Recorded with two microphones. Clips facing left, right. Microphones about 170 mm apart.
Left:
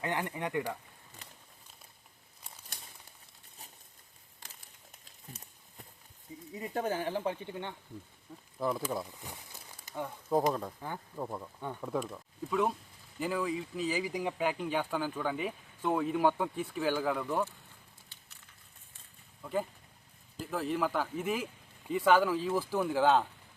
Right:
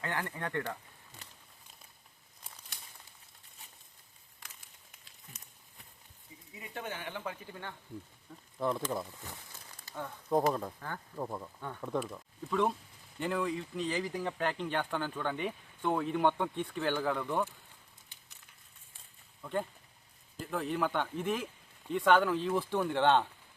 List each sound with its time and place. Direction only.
0.0 s speech: 15° left (ahead or behind)
5.0 s a sound: 40° left (ahead or behind)
6.5 s speech: 40° left (ahead or behind); by 7.8 s 20° left (ahead or behind)
8.5 s speech: 5° left (ahead or behind)
9.2 s a sound: 15° left (ahead or behind)
10.5 s speech: centre (ahead or behind)
10.8 s speech: 15° left (ahead or behind)
11.2 s speech: centre (ahead or behind)
19.4 s speech: 5° left (ahead or behind)